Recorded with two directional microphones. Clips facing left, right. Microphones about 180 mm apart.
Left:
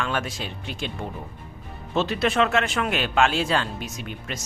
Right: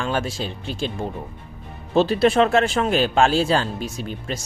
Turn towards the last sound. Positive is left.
turn(degrees=-35)  # may be behind; listen again after turning